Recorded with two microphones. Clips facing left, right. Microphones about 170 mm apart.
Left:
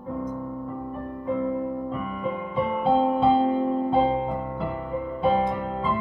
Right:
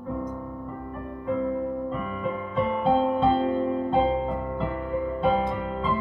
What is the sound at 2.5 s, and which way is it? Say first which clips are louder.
Music: left 1 dB; centre (ahead or behind).